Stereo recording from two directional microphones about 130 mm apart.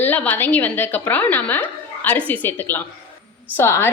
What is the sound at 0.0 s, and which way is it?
Speech, 15° left (ahead or behind).